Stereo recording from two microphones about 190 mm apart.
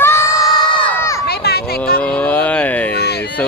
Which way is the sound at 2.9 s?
60° left (ahead or behind).